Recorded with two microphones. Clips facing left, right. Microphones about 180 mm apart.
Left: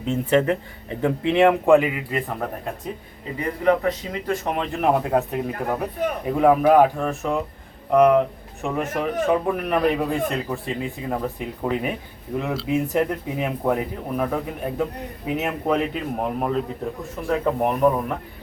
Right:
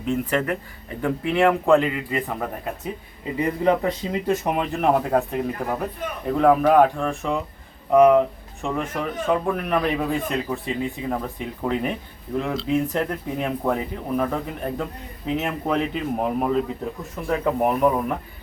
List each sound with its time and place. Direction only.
0.1 s speech: 25° left (ahead or behind); by 2.9 s 5° right (ahead or behind)
3.6 s speech: 25° right (ahead or behind)
4.4 s a man's voice: 5° right (ahead or behind)